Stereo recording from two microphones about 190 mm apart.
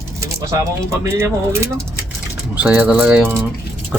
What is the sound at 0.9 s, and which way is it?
Mantra, 15° right (ahead or behind).